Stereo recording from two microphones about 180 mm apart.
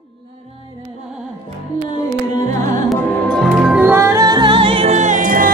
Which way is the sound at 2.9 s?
Centre (ahead or behind).